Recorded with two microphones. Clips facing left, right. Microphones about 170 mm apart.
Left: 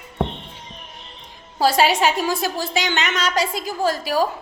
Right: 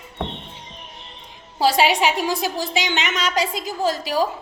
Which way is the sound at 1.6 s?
15° right (ahead or behind).